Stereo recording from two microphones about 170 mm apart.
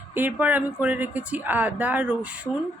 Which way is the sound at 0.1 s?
10° right (ahead or behind).